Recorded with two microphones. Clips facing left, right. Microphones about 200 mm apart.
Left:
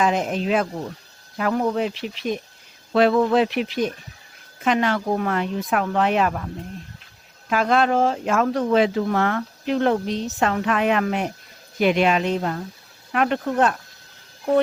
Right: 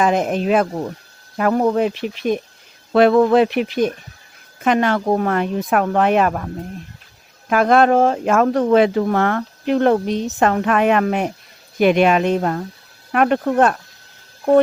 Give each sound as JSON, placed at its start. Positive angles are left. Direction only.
{"t": 0.0, "sound": "speech", "side_deg": -50}
{"t": 7.5, "sound": "speech", "side_deg": -50}